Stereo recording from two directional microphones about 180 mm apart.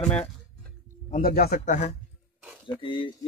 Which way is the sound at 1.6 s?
40° left (ahead or behind).